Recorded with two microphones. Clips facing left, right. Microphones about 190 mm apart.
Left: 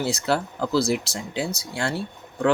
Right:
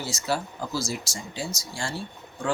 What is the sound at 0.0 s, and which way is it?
Speech, 60° left (ahead or behind).